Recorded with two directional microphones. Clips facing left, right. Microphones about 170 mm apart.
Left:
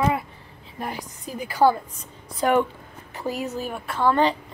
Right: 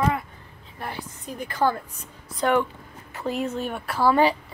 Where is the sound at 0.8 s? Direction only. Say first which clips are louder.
Left 2 dB; 15° left (ahead or behind).